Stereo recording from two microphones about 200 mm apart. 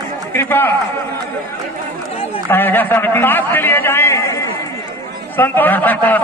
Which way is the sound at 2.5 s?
10° left (ahead or behind).